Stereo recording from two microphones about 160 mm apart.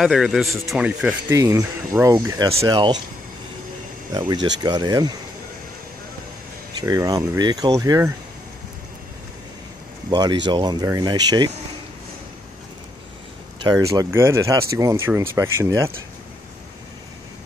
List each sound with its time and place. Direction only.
0.0 s speech: centre (ahead or behind)
1.3 s speech: 20° right (ahead or behind)
4.1 s speech: 25° right (ahead or behind)
6.8 s speech: 25° right (ahead or behind)
10.1 s speech: 25° right (ahead or behind)
13.7 s speech: 20° right (ahead or behind)